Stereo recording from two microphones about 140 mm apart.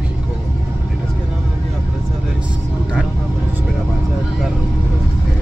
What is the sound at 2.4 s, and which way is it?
Vehicle, 5° right (ahead or behind).